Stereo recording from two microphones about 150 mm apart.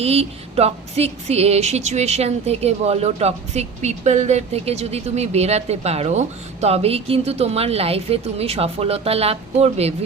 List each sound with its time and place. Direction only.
0.0 s speech: 45° right (ahead or behind)